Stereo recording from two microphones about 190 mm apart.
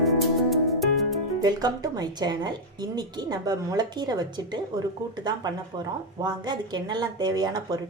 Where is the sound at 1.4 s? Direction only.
20° right (ahead or behind).